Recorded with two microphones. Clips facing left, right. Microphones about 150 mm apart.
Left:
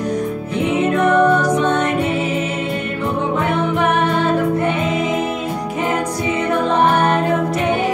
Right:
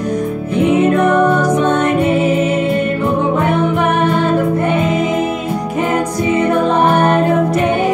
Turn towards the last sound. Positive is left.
turn(degrees=-50)  # may be behind; listen again after turning